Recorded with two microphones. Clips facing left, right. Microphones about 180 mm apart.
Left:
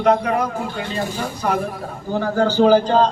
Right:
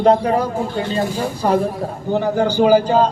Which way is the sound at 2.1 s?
15° right (ahead or behind).